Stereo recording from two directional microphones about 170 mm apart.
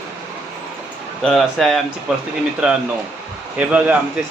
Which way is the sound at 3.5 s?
10° right (ahead or behind).